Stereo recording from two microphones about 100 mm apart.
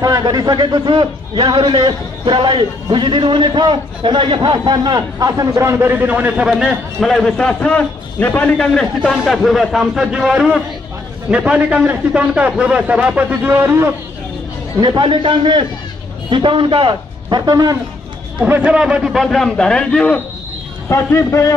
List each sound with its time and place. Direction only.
0.0 s a man's voice: 40° right (ahead or behind); by 9.1 s 10° left (ahead or behind)
9.1 s a man's voice: centre (ahead or behind); by 13.9 s 25° right (ahead or behind)
14.8 s a man's voice: 50° right (ahead or behind)
17.5 s speech: 40° right (ahead or behind)
18.4 s a man's voice: 15° right (ahead or behind)
19.2 s a man's voice: 5° left (ahead or behind)
20.9 s speech: 30° left (ahead or behind)